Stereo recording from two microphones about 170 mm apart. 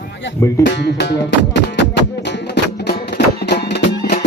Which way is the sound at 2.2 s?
90° left.